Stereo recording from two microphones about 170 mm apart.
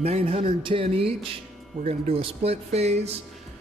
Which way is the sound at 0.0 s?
35° right (ahead or behind).